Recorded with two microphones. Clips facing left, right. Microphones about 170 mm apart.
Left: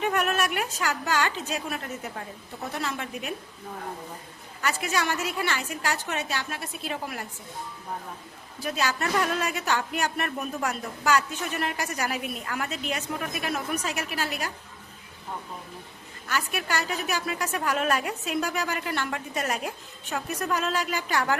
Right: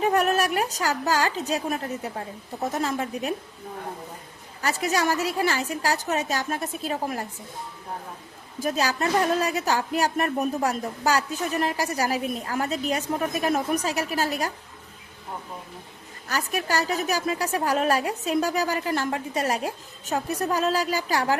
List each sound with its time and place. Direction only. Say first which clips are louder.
0.0 s a woman's voice: right 4 dB; 35° right (ahead or behind)
4.6 s a woman's voice: right 3 dB; 35° right (ahead or behind)
8.6 s a woman's voice: right 4 dB; 35° right (ahead or behind)
16.2 s a woman's voice: right 2 dB; 35° right (ahead or behind)